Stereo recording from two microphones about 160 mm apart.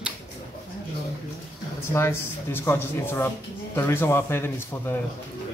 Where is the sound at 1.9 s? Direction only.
15° left (ahead or behind).